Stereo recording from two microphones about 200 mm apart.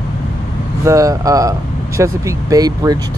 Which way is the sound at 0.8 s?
15° right (ahead or behind).